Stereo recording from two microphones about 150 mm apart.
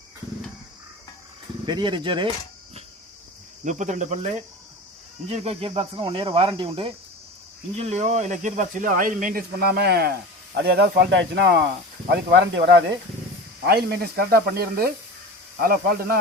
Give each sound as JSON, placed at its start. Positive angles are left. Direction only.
{"t": 1.6, "sound": "speech", "side_deg": -30}
{"t": 3.6, "sound": "speech", "side_deg": -55}
{"t": 5.3, "sound": "speech", "side_deg": -45}
{"t": 7.8, "sound": "speech", "side_deg": -50}